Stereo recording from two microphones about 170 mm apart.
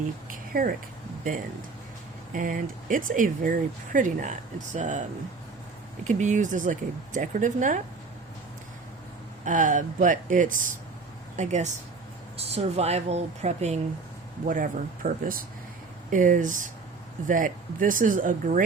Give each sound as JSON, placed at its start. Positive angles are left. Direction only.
{"t": 0.3, "sound": "a sound", "side_deg": -55}
{"t": 2.3, "sound": "speech", "side_deg": -50}
{"t": 6.1, "sound": "speech", "side_deg": -45}
{"t": 9.4, "sound": "speech", "side_deg": -50}
{"t": 14.4, "sound": "speech", "side_deg": -50}